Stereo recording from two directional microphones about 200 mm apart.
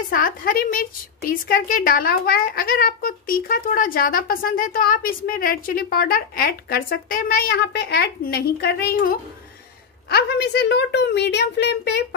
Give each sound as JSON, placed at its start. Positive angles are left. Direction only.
{"t": 0.1, "sound": "a woman's voice", "side_deg": 45}